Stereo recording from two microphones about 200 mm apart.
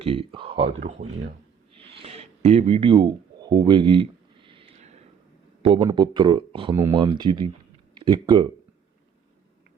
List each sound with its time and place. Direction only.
0.0 s speech: 25° right (ahead or behind)
1.7 s a sound: 25° right (ahead or behind)
5.6 s speech: 25° right (ahead or behind)